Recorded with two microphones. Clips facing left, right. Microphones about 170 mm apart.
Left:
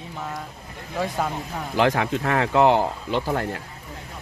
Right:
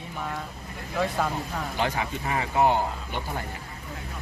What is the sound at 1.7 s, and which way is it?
Speech, 90° left.